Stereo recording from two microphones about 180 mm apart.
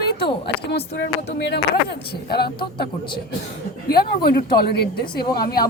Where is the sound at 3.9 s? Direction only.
60° left (ahead or behind).